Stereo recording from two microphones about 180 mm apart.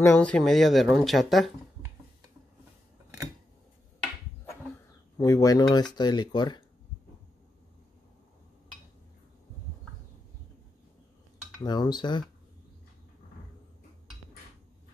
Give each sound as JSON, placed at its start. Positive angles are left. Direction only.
{"t": 0.0, "sound": "speech", "side_deg": 10}
{"t": 5.1, "sound": "speech", "side_deg": 20}
{"t": 11.6, "sound": "speech", "side_deg": 25}